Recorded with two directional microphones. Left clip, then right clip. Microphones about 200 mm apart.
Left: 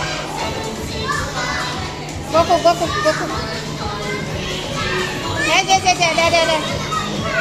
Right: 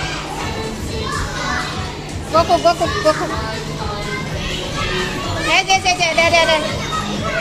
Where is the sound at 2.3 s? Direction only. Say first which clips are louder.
Even; 10° right (ahead or behind).